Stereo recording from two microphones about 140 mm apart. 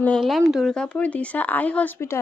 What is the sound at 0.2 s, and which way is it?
Speech, centre (ahead or behind).